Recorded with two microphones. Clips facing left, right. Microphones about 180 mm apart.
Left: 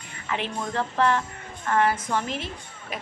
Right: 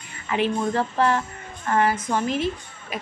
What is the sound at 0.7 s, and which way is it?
Music, 35° right (ahead or behind).